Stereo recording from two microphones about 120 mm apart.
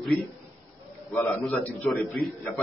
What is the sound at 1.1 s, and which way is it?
Speech, 15° left (ahead or behind).